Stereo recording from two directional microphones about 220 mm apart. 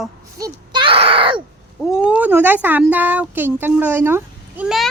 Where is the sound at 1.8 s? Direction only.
5° right (ahead or behind).